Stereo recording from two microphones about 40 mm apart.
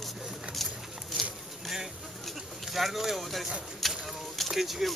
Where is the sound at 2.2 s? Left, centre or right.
Centre.